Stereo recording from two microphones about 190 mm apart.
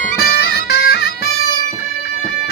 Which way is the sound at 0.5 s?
55° left (ahead or behind).